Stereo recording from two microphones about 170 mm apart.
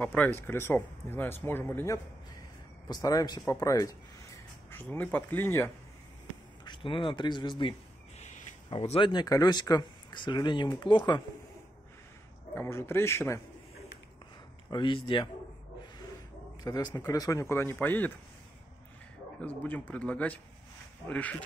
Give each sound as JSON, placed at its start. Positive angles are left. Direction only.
{"t": 0.0, "sound": "speech", "side_deg": 10}
{"t": 6.6, "sound": "speech", "side_deg": 30}
{"t": 8.2, "sound": "a sound", "side_deg": 45}
{"t": 8.6, "sound": "speech", "side_deg": 35}
{"t": 12.5, "sound": "speech", "side_deg": 15}
{"t": 14.7, "sound": "speech", "side_deg": 30}
{"t": 16.6, "sound": "speech", "side_deg": 20}
{"t": 19.4, "sound": "speech", "side_deg": 10}